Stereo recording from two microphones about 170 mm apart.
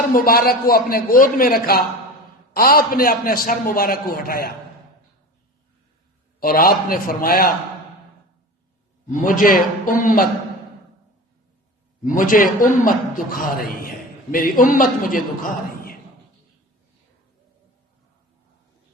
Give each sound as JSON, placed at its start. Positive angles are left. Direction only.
{"t": 0.1, "sound": "a man's voice", "side_deg": 60}
{"t": 6.4, "sound": "a man's voice", "side_deg": 60}
{"t": 9.0, "sound": "a man's voice", "side_deg": 50}
{"t": 12.0, "sound": "a man's voice", "side_deg": 55}